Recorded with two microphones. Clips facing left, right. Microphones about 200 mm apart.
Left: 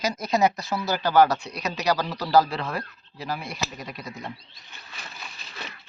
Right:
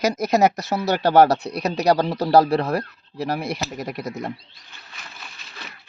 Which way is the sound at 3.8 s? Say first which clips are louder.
Right 8 dB; 50° right (ahead or behind).